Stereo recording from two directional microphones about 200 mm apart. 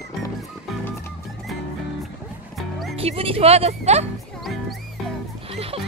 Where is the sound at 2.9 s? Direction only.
30° right (ahead or behind).